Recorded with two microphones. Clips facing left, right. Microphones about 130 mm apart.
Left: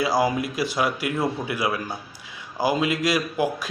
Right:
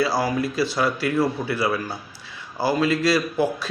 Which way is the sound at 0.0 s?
20° left (ahead or behind).